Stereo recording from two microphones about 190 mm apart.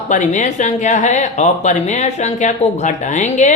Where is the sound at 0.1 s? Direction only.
40° left (ahead or behind).